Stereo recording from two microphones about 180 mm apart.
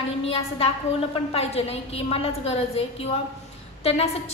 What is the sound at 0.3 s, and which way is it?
A woman's voice, 35° left (ahead or behind).